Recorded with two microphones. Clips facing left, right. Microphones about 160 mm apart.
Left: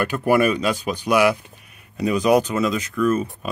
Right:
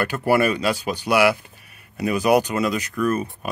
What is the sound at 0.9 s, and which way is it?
Speech, 5° right (ahead or behind).